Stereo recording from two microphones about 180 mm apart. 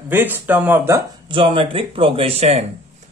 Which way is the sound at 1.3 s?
30° right (ahead or behind).